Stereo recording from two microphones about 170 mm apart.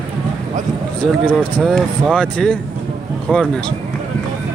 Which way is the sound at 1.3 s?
Centre (ahead or behind).